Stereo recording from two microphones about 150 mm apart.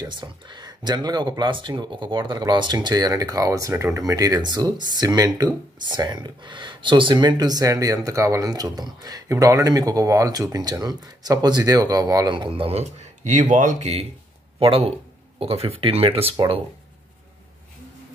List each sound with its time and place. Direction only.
0.0 s speech: 30° right (ahead or behind)